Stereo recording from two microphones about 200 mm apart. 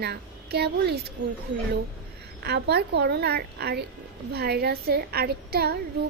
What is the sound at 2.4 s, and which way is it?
A woman's voice, 55° right (ahead or behind).